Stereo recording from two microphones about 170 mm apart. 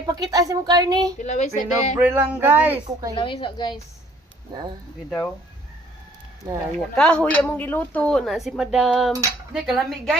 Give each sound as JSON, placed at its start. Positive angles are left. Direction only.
{"t": 0.1, "sound": "a woman's voice", "side_deg": -20}
{"t": 1.2, "sound": "speech", "side_deg": 45}
{"t": 2.0, "sound": "speech", "side_deg": -10}
{"t": 2.8, "sound": "a woman's voice", "side_deg": -20}
{"t": 3.2, "sound": "a woman's voice", "side_deg": 30}
{"t": 6.4, "sound": "a woman's voice", "side_deg": -20}
{"t": 6.9, "sound": "speech", "side_deg": 5}